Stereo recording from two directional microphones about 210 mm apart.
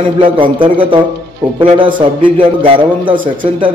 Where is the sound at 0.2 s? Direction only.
25° right (ahead or behind).